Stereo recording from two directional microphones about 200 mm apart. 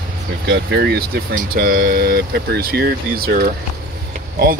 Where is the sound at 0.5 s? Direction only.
55° right (ahead or behind).